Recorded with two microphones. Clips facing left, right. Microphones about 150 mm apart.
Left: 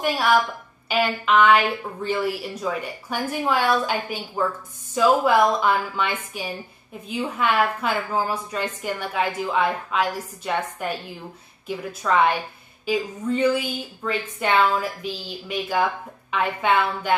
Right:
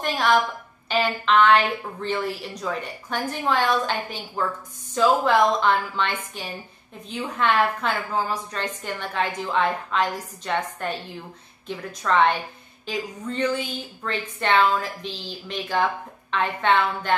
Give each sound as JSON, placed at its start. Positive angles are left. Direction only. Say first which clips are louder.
{"t": 0.0, "sound": "a woman's voice", "louder": "left 1 dB", "side_deg": 10}